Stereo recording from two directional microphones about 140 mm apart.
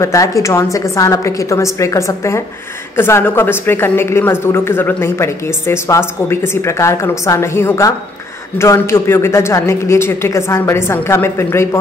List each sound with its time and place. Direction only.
0.0 s a man's voice: 20° left (ahead or behind)